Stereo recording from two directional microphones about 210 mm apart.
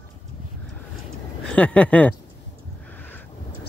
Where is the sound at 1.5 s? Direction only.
5° left (ahead or behind).